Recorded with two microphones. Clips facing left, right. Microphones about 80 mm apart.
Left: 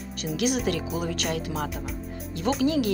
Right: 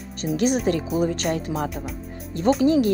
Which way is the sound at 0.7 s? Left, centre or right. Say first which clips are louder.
Right 6 dB; right.